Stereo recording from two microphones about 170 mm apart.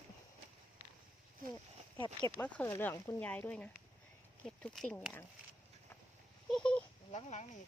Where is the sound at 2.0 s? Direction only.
25° left (ahead or behind).